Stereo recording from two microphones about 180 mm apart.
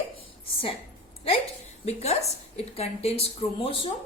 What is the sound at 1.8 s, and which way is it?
A woman's voice, 35° left (ahead or behind).